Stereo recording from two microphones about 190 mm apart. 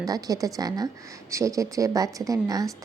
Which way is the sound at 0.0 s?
20° right (ahead or behind).